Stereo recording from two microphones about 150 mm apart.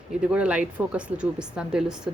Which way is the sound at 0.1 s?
5° right (ahead or behind).